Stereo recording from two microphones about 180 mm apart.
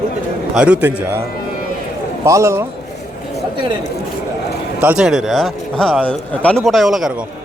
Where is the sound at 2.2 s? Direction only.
15° right (ahead or behind).